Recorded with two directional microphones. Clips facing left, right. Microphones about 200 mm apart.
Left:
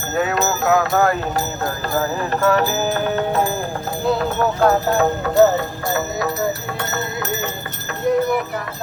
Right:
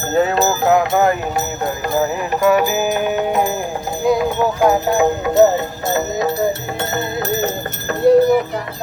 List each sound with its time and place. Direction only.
0.1 s speech: 35° right (ahead or behind)
7.4 s clip-clop: 35° right (ahead or behind)